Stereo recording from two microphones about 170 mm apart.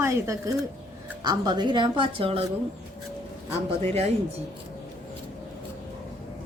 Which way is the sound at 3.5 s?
40° right (ahead or behind).